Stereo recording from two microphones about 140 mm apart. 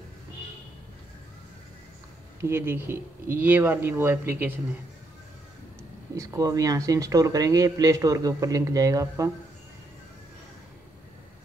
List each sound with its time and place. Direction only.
2.4 s speech: 15° right (ahead or behind)
6.1 s speech: 25° right (ahead or behind)